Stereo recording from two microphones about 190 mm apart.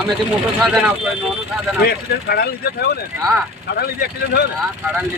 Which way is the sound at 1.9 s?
55° left (ahead or behind).